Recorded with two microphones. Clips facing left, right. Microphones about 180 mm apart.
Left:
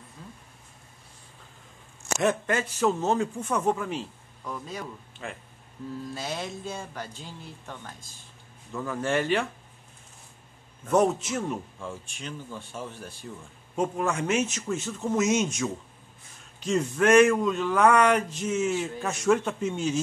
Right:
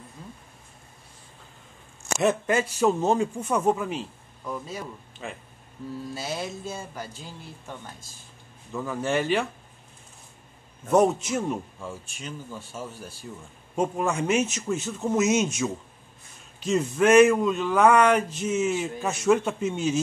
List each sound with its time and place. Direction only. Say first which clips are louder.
2.1 s a man's voice: right 2 dB; 10° right (ahead or behind)
5.2 s speech: right 1 dB; 20° right (ahead or behind)
6.1 s a man's voice: right 3 dB; 5° right (ahead or behind)
10.9 s a man's voice: right 2 dB; 10° right (ahead or behind)
18.6 s speech: right 1 dB; 15° right (ahead or behind)